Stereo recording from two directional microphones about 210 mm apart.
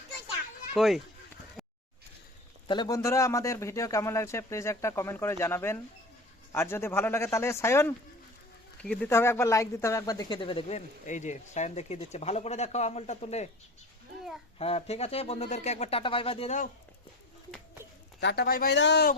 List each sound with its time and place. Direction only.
0.7 s speech: centre (ahead or behind)
1.6 s a sound: centre (ahead or behind)
2.6 s speech: 20° left (ahead or behind)
14.6 s speech: 30° left (ahead or behind)
18.2 s speech: 55° left (ahead or behind)